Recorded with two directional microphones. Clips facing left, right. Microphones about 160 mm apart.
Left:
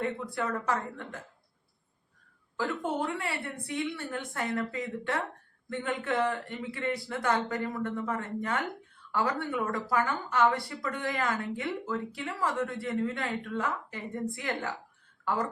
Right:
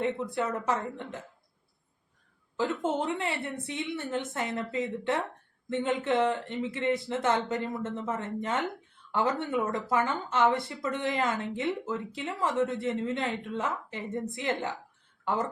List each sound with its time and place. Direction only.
0.0 s speech: 20° right (ahead or behind)
2.6 s speech: 20° right (ahead or behind)